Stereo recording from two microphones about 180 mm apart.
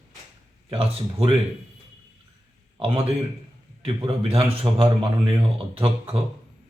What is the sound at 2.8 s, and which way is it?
A man's voice, 30° right (ahead or behind).